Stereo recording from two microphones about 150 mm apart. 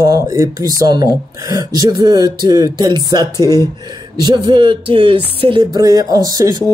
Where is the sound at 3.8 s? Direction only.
25° right (ahead or behind).